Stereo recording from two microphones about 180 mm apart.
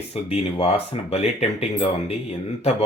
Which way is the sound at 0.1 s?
35° left (ahead or behind).